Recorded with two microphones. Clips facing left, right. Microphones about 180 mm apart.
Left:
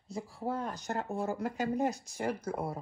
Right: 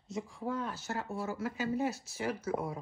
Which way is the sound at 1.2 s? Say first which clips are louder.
Left 2 dB; 55° left (ahead or behind).